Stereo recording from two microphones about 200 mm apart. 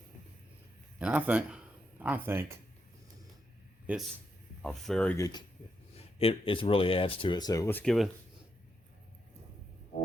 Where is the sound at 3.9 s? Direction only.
5° right (ahead or behind).